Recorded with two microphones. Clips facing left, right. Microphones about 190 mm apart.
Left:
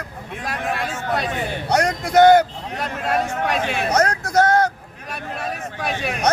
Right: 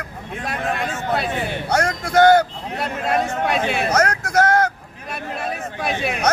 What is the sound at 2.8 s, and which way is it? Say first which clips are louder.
A man's voice: right 1 dB; 10° right (ahead or behind).